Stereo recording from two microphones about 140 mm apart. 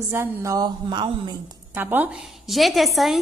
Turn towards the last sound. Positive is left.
turn(degrees=0)  # may be behind; listen again after turning